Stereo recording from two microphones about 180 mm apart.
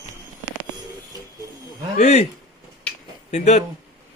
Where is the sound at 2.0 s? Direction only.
35° left (ahead or behind).